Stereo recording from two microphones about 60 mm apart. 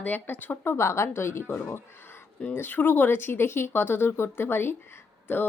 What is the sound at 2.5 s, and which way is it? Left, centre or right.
A woman's voice, left.